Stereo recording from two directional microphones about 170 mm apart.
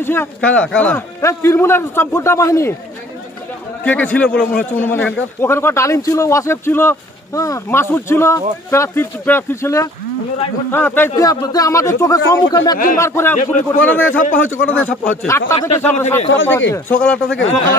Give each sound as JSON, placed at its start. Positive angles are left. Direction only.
{"t": 0.0, "sound": "a man's voice", "side_deg": 15}
{"t": 3.8, "sound": "a man's voice", "side_deg": 10}
{"t": 12.7, "sound": "speech", "side_deg": 55}
{"t": 13.0, "sound": "a man's voice", "side_deg": 15}